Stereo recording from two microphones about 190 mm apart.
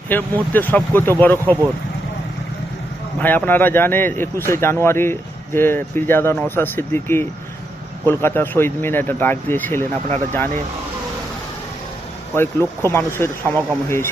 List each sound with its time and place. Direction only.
0.1 s speech: 10° left (ahead or behind)
3.2 s speech: 10° left (ahead or behind)
12.3 s speech: 10° left (ahead or behind)